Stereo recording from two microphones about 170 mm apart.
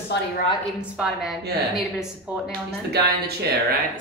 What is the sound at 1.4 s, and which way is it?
Speech, 70° right (ahead or behind).